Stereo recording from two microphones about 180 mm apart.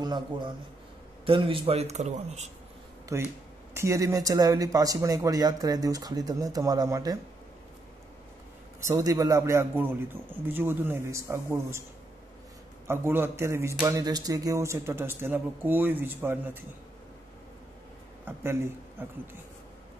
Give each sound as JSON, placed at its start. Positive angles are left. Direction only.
{"t": 0.0, "sound": "a man's voice", "side_deg": -25}
{"t": 3.1, "sound": "speech", "side_deg": -15}
{"t": 8.8, "sound": "speech", "side_deg": -20}
{"t": 12.8, "sound": "speech", "side_deg": -15}
{"t": 18.2, "sound": "a man's voice", "side_deg": -10}